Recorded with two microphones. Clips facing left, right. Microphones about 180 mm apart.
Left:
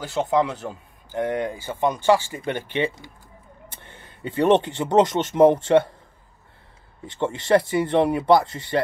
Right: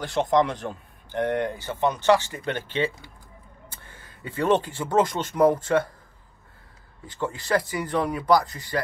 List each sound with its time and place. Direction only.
0.0 s speech: 5° left (ahead or behind); by 5.9 s 25° left (ahead or behind)
7.1 s speech: 25° left (ahead or behind)